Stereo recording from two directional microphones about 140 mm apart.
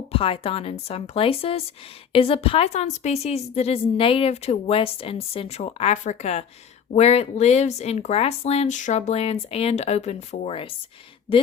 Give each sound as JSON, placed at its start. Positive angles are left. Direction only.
{"t": 0.1, "sound": "a woman's voice", "side_deg": 45}